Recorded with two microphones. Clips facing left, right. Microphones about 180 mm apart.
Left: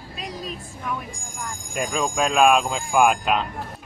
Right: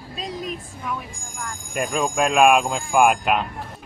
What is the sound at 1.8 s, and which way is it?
Speech, 5° right (ahead or behind).